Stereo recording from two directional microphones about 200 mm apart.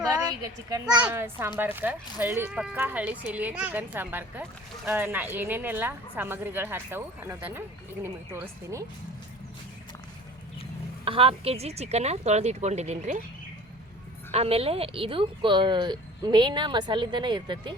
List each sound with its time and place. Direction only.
0.0 s a sound: 20° right (ahead or behind)
0.7 s speech: 20° right (ahead or behind)
11.0 s speech: 25° right (ahead or behind)
14.3 s speech: 30° right (ahead or behind)